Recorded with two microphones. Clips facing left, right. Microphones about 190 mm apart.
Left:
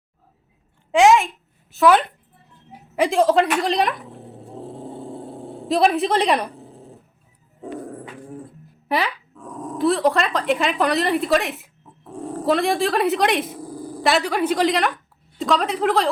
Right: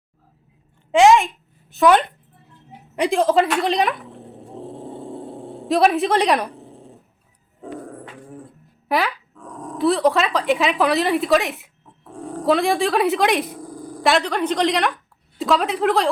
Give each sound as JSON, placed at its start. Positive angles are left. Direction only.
{"t": 0.9, "sound": "a woman's voice", "side_deg": 0}
{"t": 4.7, "sound": "a sound", "side_deg": 0}
{"t": 8.9, "sound": "a woman's voice", "side_deg": 0}